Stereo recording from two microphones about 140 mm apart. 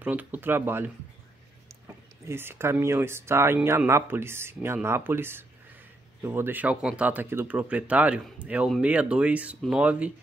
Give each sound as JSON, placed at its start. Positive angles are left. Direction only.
{"t": 0.0, "sound": "speech", "side_deg": -10}
{"t": 2.2, "sound": "speech", "side_deg": -15}